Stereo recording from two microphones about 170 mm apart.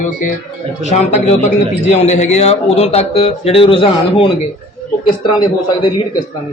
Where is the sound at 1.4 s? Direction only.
40° left (ahead or behind).